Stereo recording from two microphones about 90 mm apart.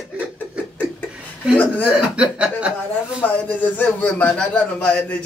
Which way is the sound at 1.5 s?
20° left (ahead or behind).